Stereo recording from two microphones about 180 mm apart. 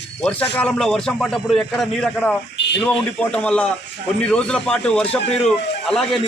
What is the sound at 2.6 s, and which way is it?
Radio, 80° left.